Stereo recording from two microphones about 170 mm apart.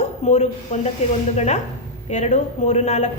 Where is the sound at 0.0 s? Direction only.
40° left (ahead or behind).